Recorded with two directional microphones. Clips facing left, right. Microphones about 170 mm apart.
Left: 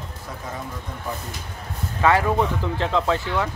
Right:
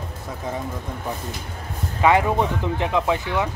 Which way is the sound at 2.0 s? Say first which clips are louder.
Right 1 dB; 20° right (ahead or behind).